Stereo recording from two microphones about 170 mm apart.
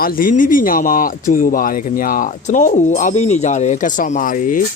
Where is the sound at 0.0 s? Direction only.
55° left (ahead or behind).